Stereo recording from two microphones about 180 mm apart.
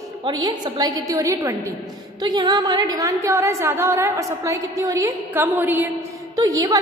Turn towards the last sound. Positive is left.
turn(degrees=-20)  # may be behind; listen again after turning